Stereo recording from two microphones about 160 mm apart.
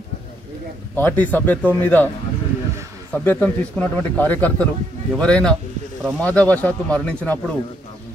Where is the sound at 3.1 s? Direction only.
10° left (ahead or behind).